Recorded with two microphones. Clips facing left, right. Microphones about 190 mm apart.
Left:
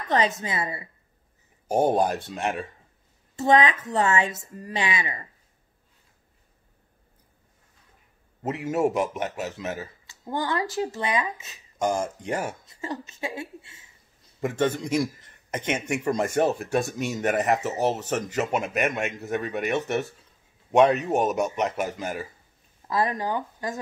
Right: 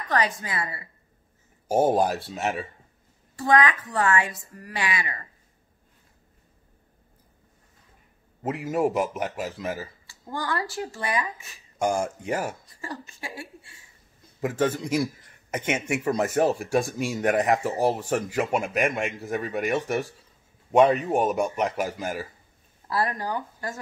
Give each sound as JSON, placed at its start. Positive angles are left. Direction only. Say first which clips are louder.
{"t": 0.1, "sound": "speech", "louder": "left 2 dB", "side_deg": 25}
{"t": 1.7, "sound": "a man's voice", "louder": "right 1 dB", "side_deg": -5}
{"t": 3.3, "sound": "speech", "louder": "left 1 dB", "side_deg": 25}
{"t": 8.4, "sound": "a man's voice", "louder": "even", "side_deg": -5}
{"t": 10.0, "sound": "speech", "louder": "left 3 dB", "side_deg": 20}
{"t": 11.8, "sound": "speech", "louder": "right 1 dB", "side_deg": -10}
{"t": 12.6, "sound": "speech", "louder": "left 4 dB", "side_deg": 20}
{"t": 14.4, "sound": "a man's voice", "louder": "even", "side_deg": -5}
{"t": 18.4, "sound": "a man's voice", "louder": "even", "side_deg": 0}
{"t": 21.3, "sound": "a man's voice", "louder": "even", "side_deg": 5}
{"t": 21.5, "sound": "speech", "louder": "even", "side_deg": -10}
{"t": 22.8, "sound": "speech", "louder": "left 2 dB", "side_deg": 20}